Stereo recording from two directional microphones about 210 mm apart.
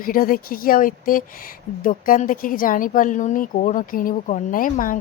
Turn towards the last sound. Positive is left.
turn(degrees=40)  # may be behind; listen again after turning